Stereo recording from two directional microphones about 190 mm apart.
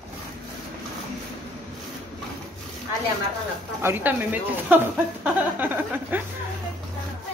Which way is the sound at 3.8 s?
10° right (ahead or behind).